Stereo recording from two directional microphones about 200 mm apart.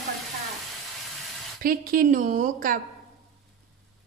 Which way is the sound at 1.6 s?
45° right (ahead or behind).